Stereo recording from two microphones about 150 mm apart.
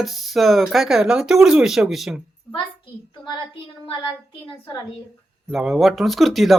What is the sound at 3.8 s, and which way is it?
Speech, 30° left (ahead or behind).